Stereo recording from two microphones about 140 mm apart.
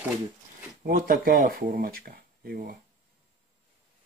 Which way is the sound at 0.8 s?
90° right.